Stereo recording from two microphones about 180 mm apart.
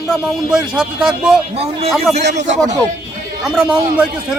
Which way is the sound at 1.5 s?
35° right (ahead or behind).